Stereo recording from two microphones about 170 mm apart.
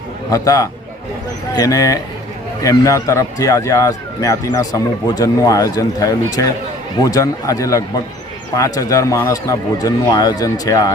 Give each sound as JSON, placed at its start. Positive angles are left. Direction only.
{"t": 0.3, "sound": "speech", "side_deg": 20}